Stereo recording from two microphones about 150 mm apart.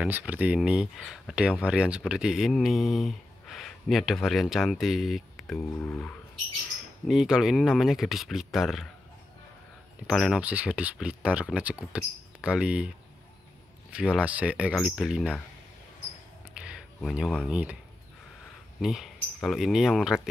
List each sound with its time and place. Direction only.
0.0 s speech: 10° right (ahead or behind)
5.6 s speech: 15° left (ahead or behind)
7.1 s speech: 5° right (ahead or behind)
10.0 s speech: 5° right (ahead or behind)
13.9 s speech: 5° right (ahead or behind)
16.5 s a sound: 5° right (ahead or behind)
17.5 s speech: 10° right (ahead or behind)
18.8 s speech: 5° right (ahead or behind)